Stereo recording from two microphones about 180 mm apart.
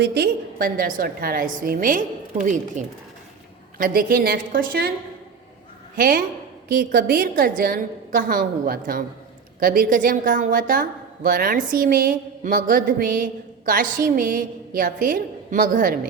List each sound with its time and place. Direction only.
0.0 s a woman's voice: 60° right (ahead or behind)
6.0 s a woman's voice: 50° right (ahead or behind)